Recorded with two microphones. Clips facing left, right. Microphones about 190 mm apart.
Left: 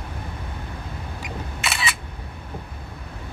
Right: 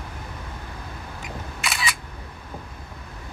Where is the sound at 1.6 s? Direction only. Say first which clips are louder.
Left 1 dB; centre (ahead or behind).